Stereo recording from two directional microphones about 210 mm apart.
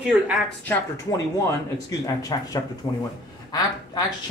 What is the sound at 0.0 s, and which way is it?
Speech, 5° right (ahead or behind).